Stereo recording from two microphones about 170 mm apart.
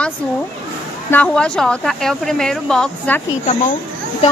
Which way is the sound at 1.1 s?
5° left (ahead or behind).